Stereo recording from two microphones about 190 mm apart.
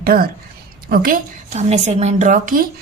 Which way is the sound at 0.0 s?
50° right (ahead or behind).